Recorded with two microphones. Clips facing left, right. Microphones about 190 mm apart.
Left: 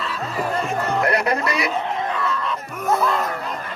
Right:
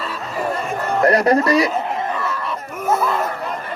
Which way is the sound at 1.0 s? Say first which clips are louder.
Right 10 dB; 40° right (ahead or behind).